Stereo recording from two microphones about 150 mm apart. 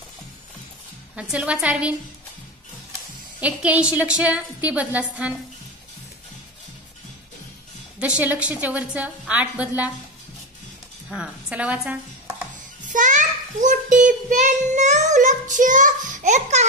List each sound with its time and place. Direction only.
1.3 s a woman's voice: 5° right (ahead or behind)
3.3 s a woman's voice: 10° right (ahead or behind)
8.0 s a woman's voice: 10° right (ahead or behind)
11.1 s a woman's voice: 5° right (ahead or behind)
12.9 s child singing: 55° right (ahead or behind)